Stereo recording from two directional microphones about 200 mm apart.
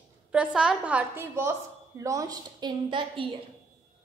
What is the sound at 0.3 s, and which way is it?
A woman's voice, 5° right (ahead or behind).